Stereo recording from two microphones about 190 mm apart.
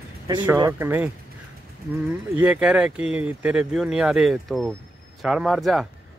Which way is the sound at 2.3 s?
10° right (ahead or behind).